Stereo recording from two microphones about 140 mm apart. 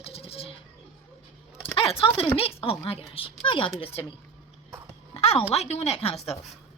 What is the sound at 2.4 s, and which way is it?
A woman's voice, 40° left (ahead or behind).